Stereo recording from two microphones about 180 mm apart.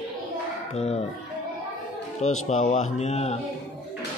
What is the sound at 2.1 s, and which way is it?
Speech, 40° left (ahead or behind).